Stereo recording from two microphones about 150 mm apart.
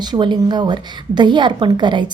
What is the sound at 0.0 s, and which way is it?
A woman's voice, 30° right (ahead or behind).